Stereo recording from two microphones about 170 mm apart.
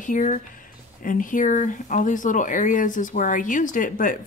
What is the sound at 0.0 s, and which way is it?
Speech, 50° left (ahead or behind).